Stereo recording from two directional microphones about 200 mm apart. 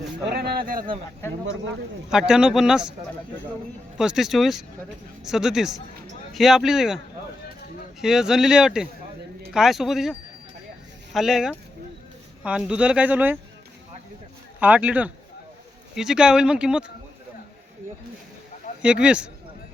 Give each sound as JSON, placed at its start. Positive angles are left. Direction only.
{"t": 0.3, "sound": "a sound", "side_deg": -55}
{"t": 2.0, "sound": "speech", "side_deg": -5}
{"t": 3.9, "sound": "speech", "side_deg": 0}
{"t": 8.0, "sound": "speech", "side_deg": 0}
{"t": 14.6, "sound": "speech", "side_deg": -5}
{"t": 18.8, "sound": "speech", "side_deg": -5}